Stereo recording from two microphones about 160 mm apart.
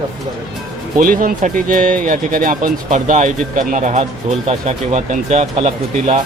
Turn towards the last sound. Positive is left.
turn(degrees=-45)  # may be behind; listen again after turning